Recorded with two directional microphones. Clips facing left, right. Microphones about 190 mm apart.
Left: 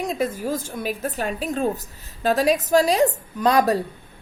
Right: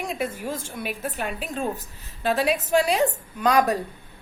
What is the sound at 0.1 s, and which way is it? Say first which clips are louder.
A woman's voice: left 4 dB; 40° left (ahead or behind).